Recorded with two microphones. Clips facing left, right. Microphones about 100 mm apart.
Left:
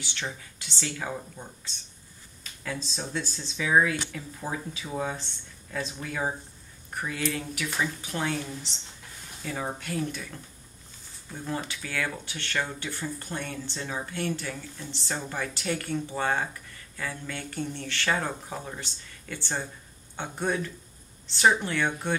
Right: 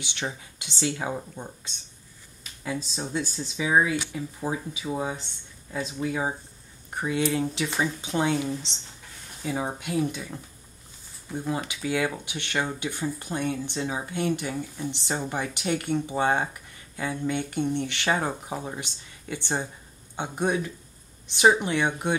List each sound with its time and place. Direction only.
0.0 s speech: 20° right (ahead or behind)
6.9 s speech: 25° right (ahead or behind)
11.4 s speech: 15° right (ahead or behind)